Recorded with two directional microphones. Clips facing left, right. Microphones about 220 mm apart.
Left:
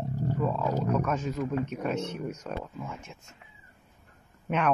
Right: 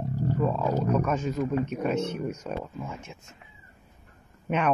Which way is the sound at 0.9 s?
Centre (ahead or behind).